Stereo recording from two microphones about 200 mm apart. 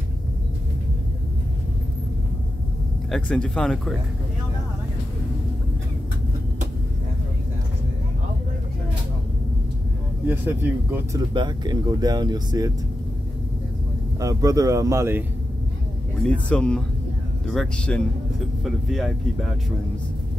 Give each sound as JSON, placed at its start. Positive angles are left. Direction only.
{"t": 3.1, "sound": "speech", "side_deg": 5}
{"t": 10.2, "sound": "speech", "side_deg": -10}
{"t": 11.3, "sound": "speech", "side_deg": -20}
{"t": 14.2, "sound": "speech", "side_deg": -15}
{"t": 16.2, "sound": "speech", "side_deg": 5}